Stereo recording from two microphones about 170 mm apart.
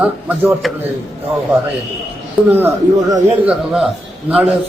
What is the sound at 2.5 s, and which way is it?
A man's voice, 10° right (ahead or behind).